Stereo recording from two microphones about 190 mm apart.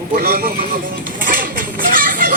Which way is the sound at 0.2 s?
50° right (ahead or behind).